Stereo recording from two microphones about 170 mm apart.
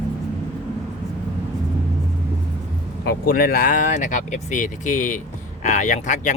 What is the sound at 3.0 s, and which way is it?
Speech, 60° left (ahead or behind).